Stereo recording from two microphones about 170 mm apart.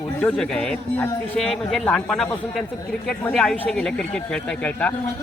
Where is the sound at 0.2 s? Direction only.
5° left (ahead or behind).